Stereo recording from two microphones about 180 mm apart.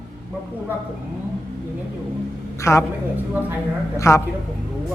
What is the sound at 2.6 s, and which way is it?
Speech, 15° left (ahead or behind).